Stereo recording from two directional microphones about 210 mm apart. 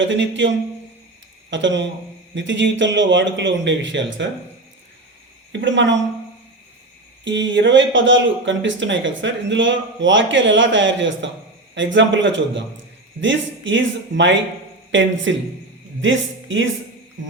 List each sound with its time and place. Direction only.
0.0 s speech: 60° right (ahead or behind)
5.5 s speech: 60° right (ahead or behind)
7.3 s speech: 60° right (ahead or behind)